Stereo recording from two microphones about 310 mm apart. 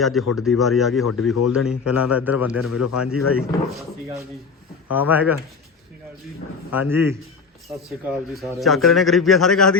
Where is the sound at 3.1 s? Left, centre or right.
Left.